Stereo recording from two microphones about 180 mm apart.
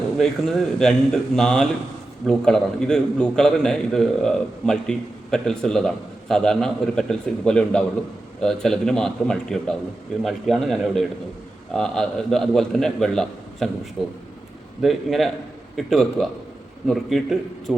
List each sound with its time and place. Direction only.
0.2 s a man's voice: centre (ahead or behind)